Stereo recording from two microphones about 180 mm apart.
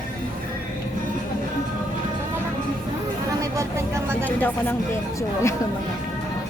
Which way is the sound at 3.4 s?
15° right (ahead or behind).